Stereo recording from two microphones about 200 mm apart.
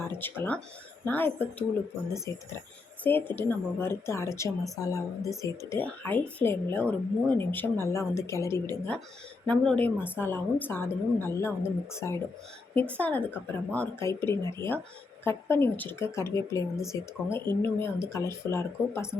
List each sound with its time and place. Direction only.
0.0 s a woman's voice: 10° left (ahead or behind)